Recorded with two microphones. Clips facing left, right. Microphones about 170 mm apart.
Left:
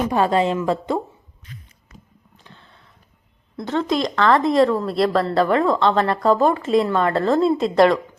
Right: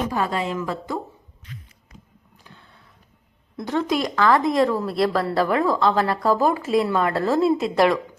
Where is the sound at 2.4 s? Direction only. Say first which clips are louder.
Left 1 dB; 10° right (ahead or behind).